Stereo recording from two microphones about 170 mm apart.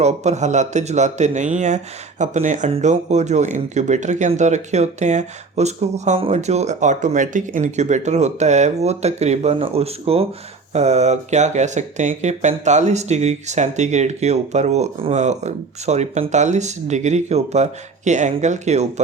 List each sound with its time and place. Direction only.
0.0 s speech: 40° right (ahead or behind)